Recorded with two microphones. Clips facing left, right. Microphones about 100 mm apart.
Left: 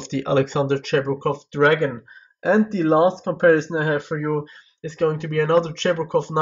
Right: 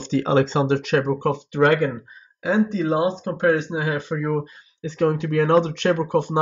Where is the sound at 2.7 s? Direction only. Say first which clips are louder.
Left 4 dB; 60° left (ahead or behind).